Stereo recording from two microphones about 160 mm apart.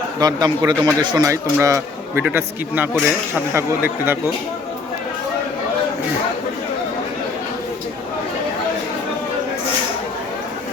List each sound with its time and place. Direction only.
0.2 s a man's voice: 25° right (ahead or behind)